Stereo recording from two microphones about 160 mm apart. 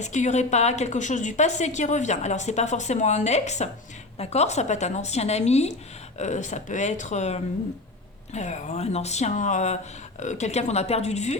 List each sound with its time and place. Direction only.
0.0 s a woman's voice: 45° left (ahead or behind)